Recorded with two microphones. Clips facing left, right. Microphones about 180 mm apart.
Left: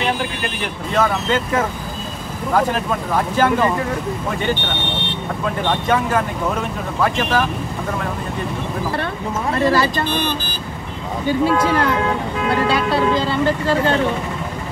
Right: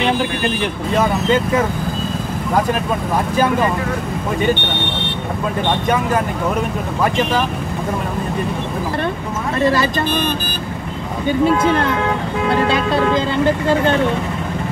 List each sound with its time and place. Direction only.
9.7 s speech: 20° right (ahead or behind)
11.4 s speech: 25° right (ahead or behind)